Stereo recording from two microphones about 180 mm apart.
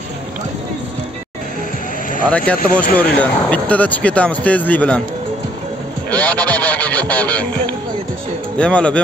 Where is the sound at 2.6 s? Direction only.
50° left (ahead or behind).